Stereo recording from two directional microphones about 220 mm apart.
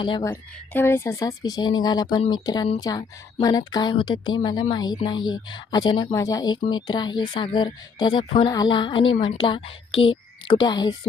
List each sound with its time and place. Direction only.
0.0 s speech: 20° left (ahead or behind)